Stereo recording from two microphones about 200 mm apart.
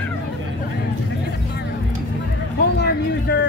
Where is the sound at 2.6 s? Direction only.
55° left (ahead or behind).